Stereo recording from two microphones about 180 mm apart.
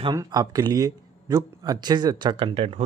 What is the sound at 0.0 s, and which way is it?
Speech, 20° right (ahead or behind).